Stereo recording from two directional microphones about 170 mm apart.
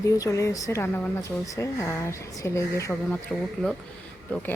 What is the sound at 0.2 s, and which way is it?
Speech, 20° left (ahead or behind).